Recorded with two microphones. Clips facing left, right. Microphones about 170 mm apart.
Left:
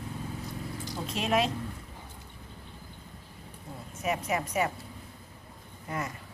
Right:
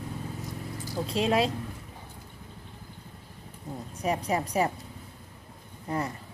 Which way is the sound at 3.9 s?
35° right (ahead or behind).